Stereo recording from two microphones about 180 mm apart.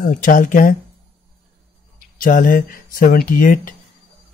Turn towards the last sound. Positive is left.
turn(degrees=50)  # may be behind; listen again after turning